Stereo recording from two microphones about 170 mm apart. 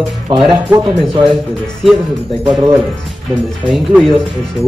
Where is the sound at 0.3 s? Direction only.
25° right (ahead or behind).